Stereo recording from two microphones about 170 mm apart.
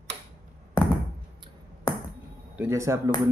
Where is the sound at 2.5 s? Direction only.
15° right (ahead or behind).